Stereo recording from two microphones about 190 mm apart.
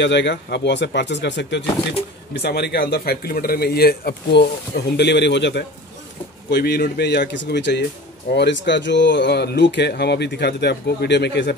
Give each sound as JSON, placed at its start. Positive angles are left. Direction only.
{"t": 0.0, "sound": "speech", "side_deg": 65}